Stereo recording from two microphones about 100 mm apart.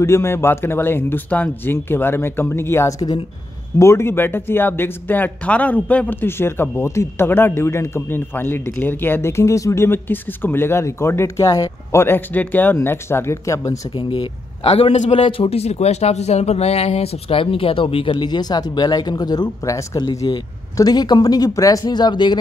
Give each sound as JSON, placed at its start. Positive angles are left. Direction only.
{"t": 0.0, "sound": "speech", "side_deg": 25}
{"t": 13.9, "sound": "a man's voice", "side_deg": 65}
{"t": 18.1, "sound": "speech", "side_deg": 45}